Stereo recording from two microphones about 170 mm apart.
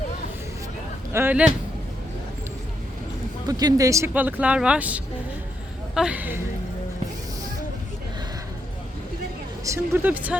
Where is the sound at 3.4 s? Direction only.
20° right (ahead or behind).